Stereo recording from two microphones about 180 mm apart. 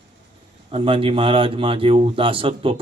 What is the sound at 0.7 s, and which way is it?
A man's voice, 30° right (ahead or behind).